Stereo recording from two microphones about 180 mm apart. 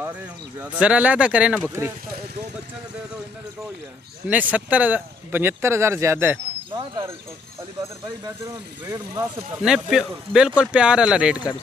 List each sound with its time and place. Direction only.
0.6 s speech: 5° right (ahead or behind)
4.3 s speech: 10° right (ahead or behind)
6.7 s speech: 25° right (ahead or behind)
8.5 s speech: 20° right (ahead or behind)
9.6 s speech: 5° right (ahead or behind)